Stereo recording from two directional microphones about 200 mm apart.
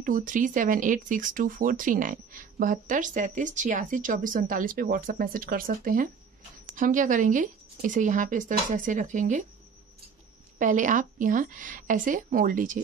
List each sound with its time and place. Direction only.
0.0 s speech: 40° right (ahead or behind)
10.6 s speech: 40° right (ahead or behind)